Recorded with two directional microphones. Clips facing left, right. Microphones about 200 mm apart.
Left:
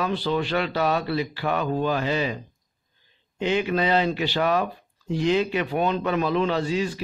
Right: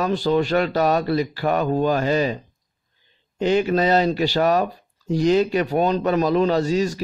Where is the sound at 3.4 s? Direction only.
40° right (ahead or behind).